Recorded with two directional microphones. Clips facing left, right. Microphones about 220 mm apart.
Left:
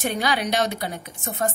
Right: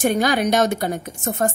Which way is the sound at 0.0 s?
50° right (ahead or behind).